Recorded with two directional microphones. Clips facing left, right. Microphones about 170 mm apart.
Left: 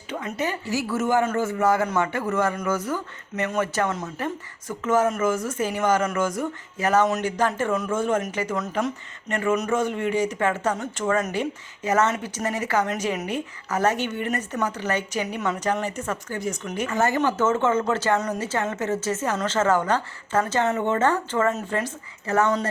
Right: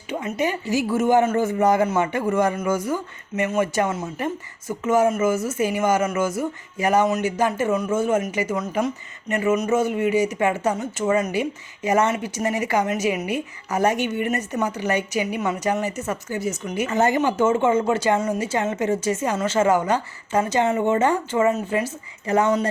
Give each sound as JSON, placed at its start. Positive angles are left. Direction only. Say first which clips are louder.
{"t": 0.3, "sound": "a woman's voice", "louder": "right 4 dB", "side_deg": -15}
{"t": 9.3, "sound": "a sound", "louder": "right 3 dB", "side_deg": -5}
{"t": 9.7, "sound": "a woman's voice", "louder": "right 3 dB", "side_deg": -10}
{"t": 16.9, "sound": "a woman's voice", "louder": "right 2 dB", "side_deg": -20}